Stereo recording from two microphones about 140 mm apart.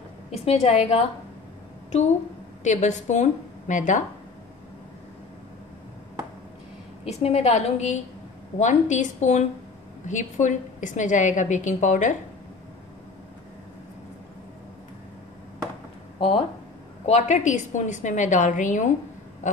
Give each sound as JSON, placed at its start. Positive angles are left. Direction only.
{"t": 0.3, "sound": "a woman's voice", "side_deg": 50}
{"t": 7.1, "sound": "a woman's voice", "side_deg": 50}
{"t": 16.2, "sound": "speech", "side_deg": 40}
{"t": 17.0, "sound": "a woman's voice", "side_deg": 55}
{"t": 19.4, "sound": "a sound", "side_deg": 60}